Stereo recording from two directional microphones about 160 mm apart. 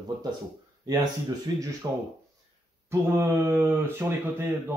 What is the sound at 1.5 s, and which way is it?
Speech, 20° right (ahead or behind).